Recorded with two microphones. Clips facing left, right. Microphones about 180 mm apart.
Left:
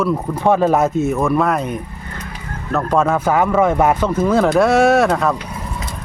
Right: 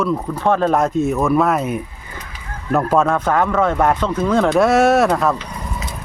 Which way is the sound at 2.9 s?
5° left (ahead or behind).